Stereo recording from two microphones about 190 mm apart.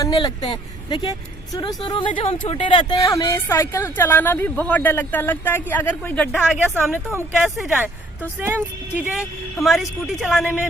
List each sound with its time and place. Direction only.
0.0 s speech: 25° left (ahead or behind)
6.5 s speech: 10° right (ahead or behind)